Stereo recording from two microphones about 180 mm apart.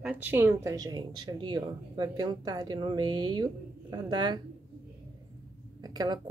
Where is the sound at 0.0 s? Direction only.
10° right (ahead or behind).